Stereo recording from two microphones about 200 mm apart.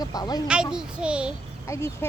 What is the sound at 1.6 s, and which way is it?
Speech, 15° left (ahead or behind).